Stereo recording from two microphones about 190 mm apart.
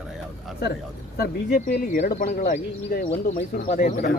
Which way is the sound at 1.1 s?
55° left (ahead or behind).